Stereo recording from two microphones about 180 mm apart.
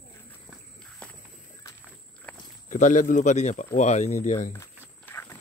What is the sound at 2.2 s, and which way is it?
Walk, 10° left (ahead or behind).